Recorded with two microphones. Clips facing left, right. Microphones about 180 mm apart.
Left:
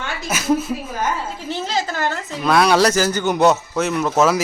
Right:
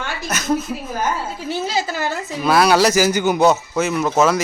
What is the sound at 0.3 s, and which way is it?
Speech, 10° left (ahead or behind).